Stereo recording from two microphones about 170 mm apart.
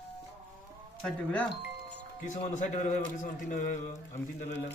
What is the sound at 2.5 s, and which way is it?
A man's voice, 45° left (ahead or behind).